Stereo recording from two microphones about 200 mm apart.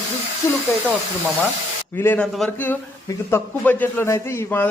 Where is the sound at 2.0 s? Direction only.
5° left (ahead or behind).